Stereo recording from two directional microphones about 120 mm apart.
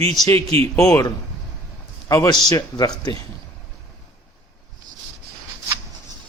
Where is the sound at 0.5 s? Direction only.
55° right (ahead or behind).